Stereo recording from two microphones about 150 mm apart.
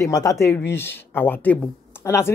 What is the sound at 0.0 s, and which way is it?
Speech, 20° left (ahead or behind).